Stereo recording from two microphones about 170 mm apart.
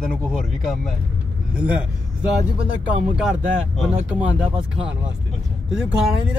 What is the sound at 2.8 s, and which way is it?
Speech, 5° right (ahead or behind).